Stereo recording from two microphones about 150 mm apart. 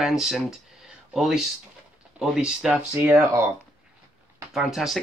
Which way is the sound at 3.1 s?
15° right (ahead or behind).